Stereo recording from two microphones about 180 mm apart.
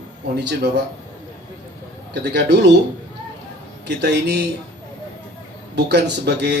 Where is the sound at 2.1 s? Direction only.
70° right (ahead or behind).